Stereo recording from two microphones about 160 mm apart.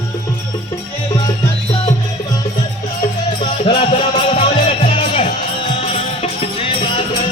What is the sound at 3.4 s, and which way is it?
Music, 30° left (ahead or behind).